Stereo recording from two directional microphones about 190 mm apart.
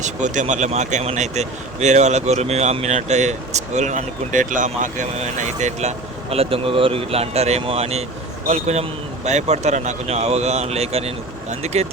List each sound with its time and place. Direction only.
0.0 s speech: 40° right (ahead or behind)